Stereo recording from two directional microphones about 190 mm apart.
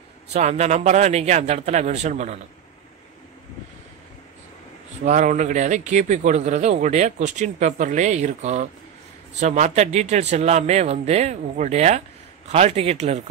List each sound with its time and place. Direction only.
0.3 s speech: 35° right (ahead or behind)
5.0 s speech: 40° right (ahead or behind)